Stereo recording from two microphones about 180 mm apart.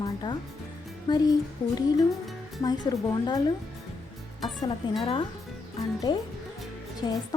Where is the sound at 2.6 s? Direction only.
20° left (ahead or behind).